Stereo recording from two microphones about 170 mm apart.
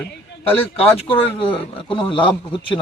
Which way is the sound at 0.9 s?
30° left (ahead or behind).